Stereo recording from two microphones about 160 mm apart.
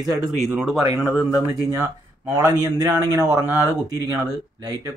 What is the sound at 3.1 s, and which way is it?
Speech, 20° right (ahead or behind).